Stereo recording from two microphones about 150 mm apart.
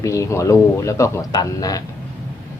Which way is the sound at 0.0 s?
20° left (ahead or behind).